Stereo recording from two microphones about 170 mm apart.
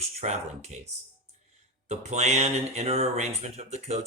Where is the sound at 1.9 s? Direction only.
40° right (ahead or behind).